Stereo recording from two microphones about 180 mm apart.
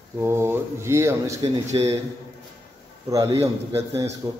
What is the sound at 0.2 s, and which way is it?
Speech, 15° right (ahead or behind).